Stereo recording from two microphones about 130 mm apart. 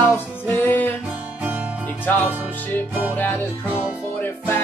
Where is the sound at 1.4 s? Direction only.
15° right (ahead or behind).